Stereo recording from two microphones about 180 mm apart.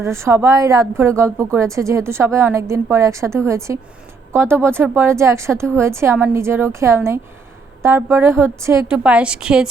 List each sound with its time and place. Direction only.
0.0 s a woman's voice: 15° right (ahead or behind)